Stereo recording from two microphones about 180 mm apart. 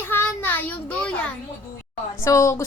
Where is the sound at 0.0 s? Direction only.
10° left (ahead or behind).